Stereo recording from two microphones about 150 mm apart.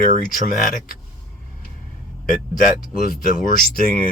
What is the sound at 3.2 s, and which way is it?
Speech, 70° left (ahead or behind).